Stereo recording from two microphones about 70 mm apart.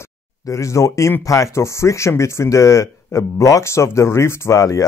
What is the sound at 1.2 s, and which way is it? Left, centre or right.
Speech, left.